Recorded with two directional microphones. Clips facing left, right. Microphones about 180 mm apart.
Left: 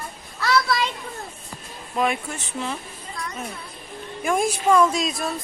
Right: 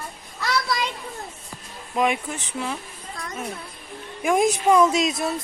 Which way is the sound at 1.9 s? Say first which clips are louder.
Right 1 dB; 15° right (ahead or behind).